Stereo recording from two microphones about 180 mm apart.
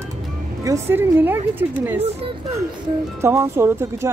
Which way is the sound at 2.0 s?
35° right (ahead or behind).